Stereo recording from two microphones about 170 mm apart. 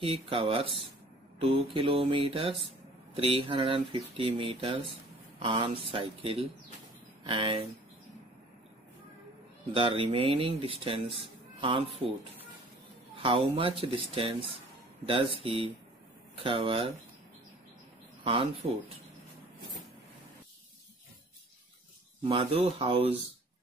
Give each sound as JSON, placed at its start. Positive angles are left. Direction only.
{"t": 0.0, "sound": "speech", "side_deg": -30}
{"t": 9.8, "sound": "speech", "side_deg": -30}
{"t": 13.2, "sound": "speech", "side_deg": -35}
{"t": 18.2, "sound": "speech", "side_deg": -35}
{"t": 22.2, "sound": "speech", "side_deg": -30}